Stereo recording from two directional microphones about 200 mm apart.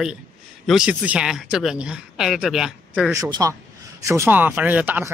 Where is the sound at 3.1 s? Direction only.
20° right (ahead or behind).